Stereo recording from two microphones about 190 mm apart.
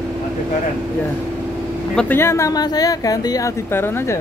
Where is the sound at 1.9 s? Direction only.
10° left (ahead or behind).